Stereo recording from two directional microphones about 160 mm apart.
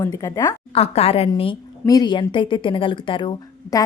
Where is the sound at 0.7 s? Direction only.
40° left (ahead or behind).